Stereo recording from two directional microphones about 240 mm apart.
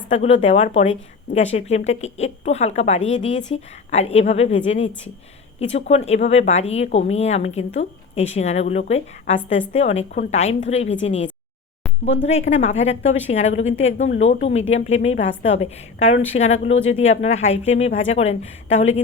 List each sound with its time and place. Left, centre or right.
0.1 s a woman's voice: left